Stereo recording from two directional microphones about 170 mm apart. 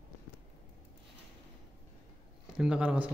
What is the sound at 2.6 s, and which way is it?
Speech, 5° right (ahead or behind).